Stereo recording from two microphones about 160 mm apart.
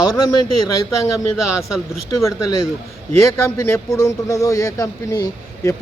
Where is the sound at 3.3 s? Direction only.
20° left (ahead or behind).